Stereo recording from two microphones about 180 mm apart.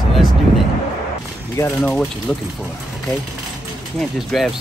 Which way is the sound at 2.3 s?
5° left (ahead or behind).